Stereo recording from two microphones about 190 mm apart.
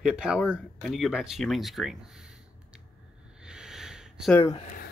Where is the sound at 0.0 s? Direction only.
5° right (ahead or behind).